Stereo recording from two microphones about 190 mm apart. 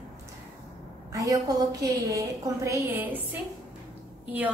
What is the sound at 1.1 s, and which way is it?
A woman's voice, 20° right (ahead or behind).